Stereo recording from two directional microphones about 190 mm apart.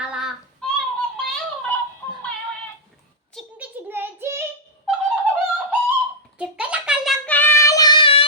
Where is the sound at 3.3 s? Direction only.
10° right (ahead or behind).